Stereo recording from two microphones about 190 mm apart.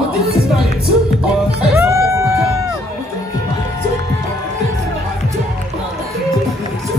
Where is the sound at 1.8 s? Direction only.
15° right (ahead or behind).